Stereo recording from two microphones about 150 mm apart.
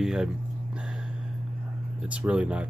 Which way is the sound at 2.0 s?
10° right (ahead or behind).